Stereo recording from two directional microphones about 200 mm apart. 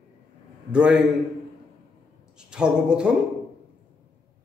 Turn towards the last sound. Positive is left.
turn(degrees=-5)  # may be behind; listen again after turning